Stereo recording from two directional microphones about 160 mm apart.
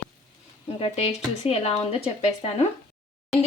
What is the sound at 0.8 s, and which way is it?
Speech, 40° left (ahead or behind).